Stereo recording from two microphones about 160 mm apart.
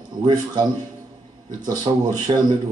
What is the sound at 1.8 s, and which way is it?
Speech, 25° right (ahead or behind).